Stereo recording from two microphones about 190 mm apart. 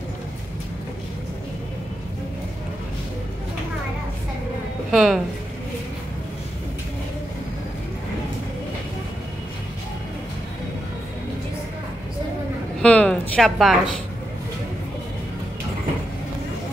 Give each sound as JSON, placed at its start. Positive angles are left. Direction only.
{"t": 4.9, "sound": "speech", "side_deg": 0}
{"t": 12.8, "sound": "a sound", "side_deg": 5}
{"t": 13.3, "sound": "speech", "side_deg": 0}